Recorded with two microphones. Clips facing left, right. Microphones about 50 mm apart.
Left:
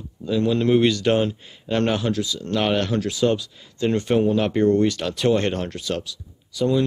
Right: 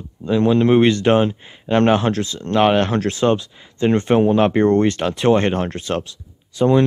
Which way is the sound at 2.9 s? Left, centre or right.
Right.